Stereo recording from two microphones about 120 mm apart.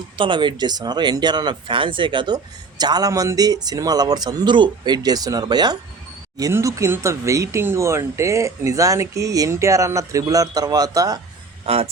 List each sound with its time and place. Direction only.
0.2 s speech: 40° right (ahead or behind)
11.6 s a man's voice: 60° right (ahead or behind)